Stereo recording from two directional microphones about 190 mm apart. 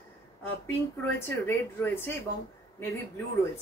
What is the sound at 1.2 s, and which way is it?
Speech, 10° left (ahead or behind).